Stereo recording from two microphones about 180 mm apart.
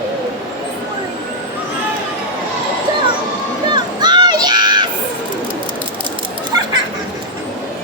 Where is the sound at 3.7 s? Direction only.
25° right (ahead or behind).